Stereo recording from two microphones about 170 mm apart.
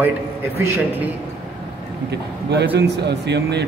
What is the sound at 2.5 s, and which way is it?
Speech, 80° right.